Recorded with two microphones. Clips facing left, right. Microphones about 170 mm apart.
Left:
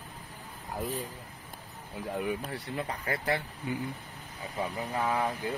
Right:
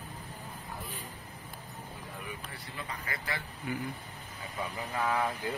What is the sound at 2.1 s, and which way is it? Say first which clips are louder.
Speech: left 13 dB; 75° left (ahead or behind).